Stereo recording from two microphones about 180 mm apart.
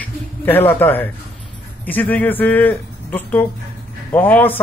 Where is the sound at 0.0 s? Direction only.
10° left (ahead or behind).